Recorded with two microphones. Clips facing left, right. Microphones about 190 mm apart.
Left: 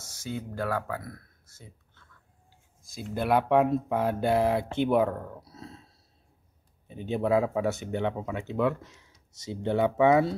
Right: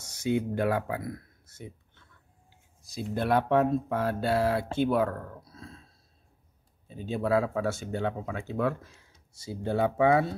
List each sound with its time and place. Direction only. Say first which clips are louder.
0.0 s speech: right 8 dB; 20° right (ahead or behind)
3.0 s speech: left 1 dB; 5° left (ahead or behind)
5.5 s a sound: left 2 dB; 20° left (ahead or behind)
6.9 s speech: left 1 dB; 20° left (ahead or behind)